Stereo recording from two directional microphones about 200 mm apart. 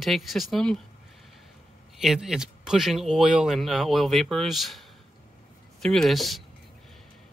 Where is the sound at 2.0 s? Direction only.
Centre (ahead or behind).